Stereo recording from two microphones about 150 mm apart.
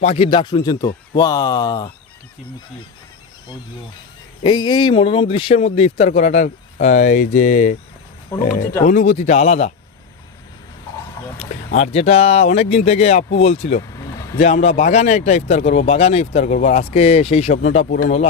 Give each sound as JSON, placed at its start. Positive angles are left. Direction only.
{"t": 0.0, "sound": "speech", "side_deg": 40}
{"t": 4.4, "sound": "a sound", "side_deg": 30}
{"t": 5.6, "sound": "a man's voice", "side_deg": 45}
{"t": 11.3, "sound": "a man's voice", "side_deg": 45}
{"t": 13.9, "sound": "vehicle", "side_deg": 20}
{"t": 14.3, "sound": "a man's voice", "side_deg": 50}
{"t": 17.8, "sound": "speech", "side_deg": 70}